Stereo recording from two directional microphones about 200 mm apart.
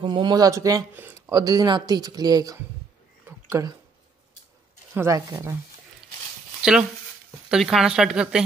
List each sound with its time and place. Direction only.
0.0 s speech: 25° right (ahead or behind)
3.3 s a sound: 15° right (ahead or behind)
4.9 s speech: 15° right (ahead or behind)
6.6 s speech: 5° right (ahead or behind)